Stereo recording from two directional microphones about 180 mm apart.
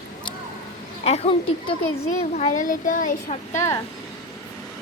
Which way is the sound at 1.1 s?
35° left (ahead or behind).